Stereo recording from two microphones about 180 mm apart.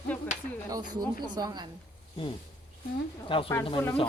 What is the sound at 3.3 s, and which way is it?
Speech, 30° left (ahead or behind).